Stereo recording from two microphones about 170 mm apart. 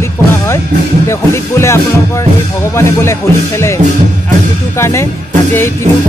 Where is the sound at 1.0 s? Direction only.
15° left (ahead or behind).